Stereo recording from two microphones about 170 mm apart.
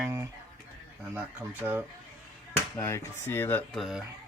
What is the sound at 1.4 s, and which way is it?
Speech, 15° right (ahead or behind).